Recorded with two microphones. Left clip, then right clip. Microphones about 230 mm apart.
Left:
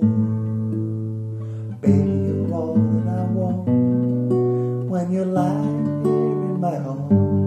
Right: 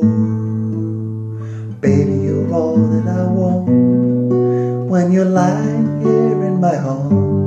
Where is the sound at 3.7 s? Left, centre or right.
Left.